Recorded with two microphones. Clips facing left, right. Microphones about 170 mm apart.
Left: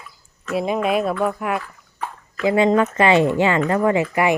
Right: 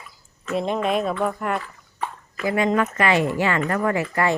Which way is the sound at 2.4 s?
25° left (ahead or behind).